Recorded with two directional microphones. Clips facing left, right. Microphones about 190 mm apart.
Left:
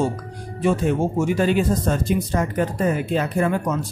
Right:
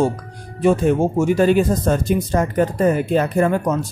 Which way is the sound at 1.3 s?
45° right (ahead or behind).